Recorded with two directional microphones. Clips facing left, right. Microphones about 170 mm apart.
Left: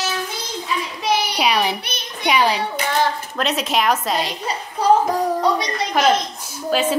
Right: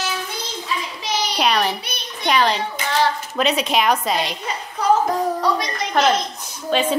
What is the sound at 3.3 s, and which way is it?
A woman's voice, centre (ahead or behind).